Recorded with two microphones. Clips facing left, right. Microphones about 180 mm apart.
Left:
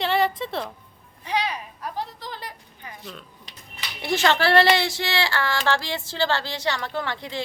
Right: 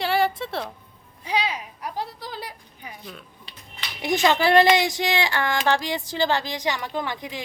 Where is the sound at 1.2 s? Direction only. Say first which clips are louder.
Even; 10° right (ahead or behind).